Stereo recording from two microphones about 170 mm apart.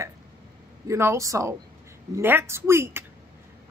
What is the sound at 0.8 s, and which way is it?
Speech, 15° right (ahead or behind).